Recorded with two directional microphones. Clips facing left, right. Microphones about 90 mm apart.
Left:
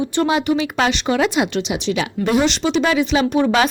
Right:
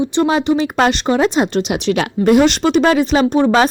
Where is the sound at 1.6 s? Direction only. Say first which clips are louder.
Right 4 dB; 55° right (ahead or behind).